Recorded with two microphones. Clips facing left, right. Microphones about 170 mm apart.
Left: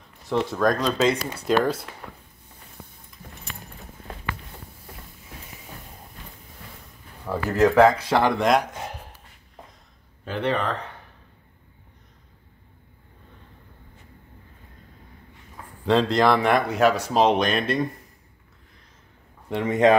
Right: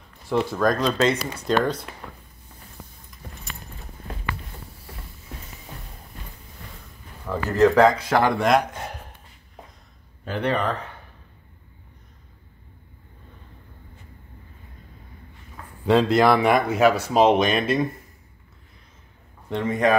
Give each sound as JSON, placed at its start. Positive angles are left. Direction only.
{"t": 0.3, "sound": "speech", "side_deg": 0}
{"t": 7.2, "sound": "speech", "side_deg": 10}
{"t": 8.2, "sound": "a man's voice", "side_deg": 0}
{"t": 10.2, "sound": "speech", "side_deg": 0}
{"t": 15.8, "sound": "speech", "side_deg": -10}
{"t": 19.5, "sound": "speech", "side_deg": 20}